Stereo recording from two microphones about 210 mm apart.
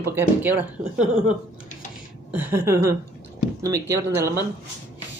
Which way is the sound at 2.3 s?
10° right (ahead or behind).